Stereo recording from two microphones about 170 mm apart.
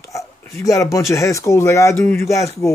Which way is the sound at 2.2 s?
20° left (ahead or behind).